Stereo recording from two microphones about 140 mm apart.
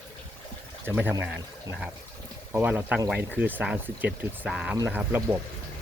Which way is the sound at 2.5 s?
15° right (ahead or behind).